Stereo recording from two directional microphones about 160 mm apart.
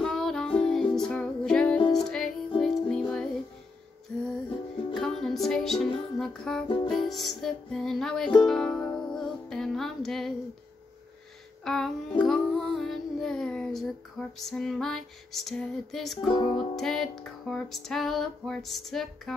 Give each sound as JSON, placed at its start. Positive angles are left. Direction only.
{"t": 0.0, "sound": "music", "side_deg": 0}
{"t": 1.8, "sound": "music", "side_deg": 25}
{"t": 2.0, "sound": "music", "side_deg": 0}
{"t": 4.9, "sound": "music", "side_deg": 0}
{"t": 11.6, "sound": "music", "side_deg": 5}